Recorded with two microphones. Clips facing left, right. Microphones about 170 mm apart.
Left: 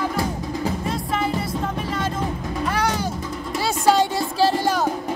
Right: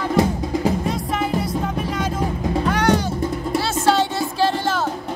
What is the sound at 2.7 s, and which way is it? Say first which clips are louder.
Music: right 4 dB; 5° left (ahead or behind).